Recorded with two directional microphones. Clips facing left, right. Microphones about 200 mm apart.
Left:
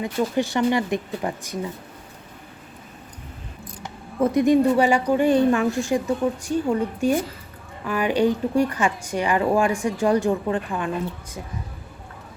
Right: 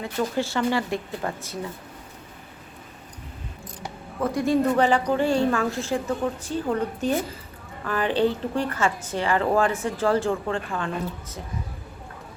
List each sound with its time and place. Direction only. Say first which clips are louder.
0.0 s a woman's voice: left 3 dB; 15° left (ahead or behind)
4.2 s a woman's voice: left 5 dB; 20° left (ahead or behind)